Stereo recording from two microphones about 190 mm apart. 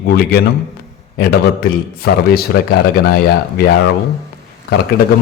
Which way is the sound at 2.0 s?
55° left (ahead or behind).